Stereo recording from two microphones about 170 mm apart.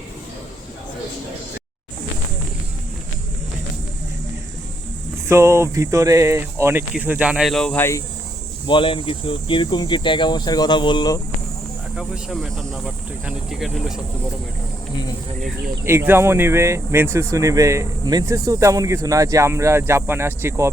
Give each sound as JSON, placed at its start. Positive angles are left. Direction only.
{"t": 5.3, "sound": "speech", "side_deg": -15}
{"t": 8.6, "sound": "speech", "side_deg": 30}
{"t": 11.9, "sound": "speech", "side_deg": -5}
{"t": 15.8, "sound": "speech", "side_deg": -15}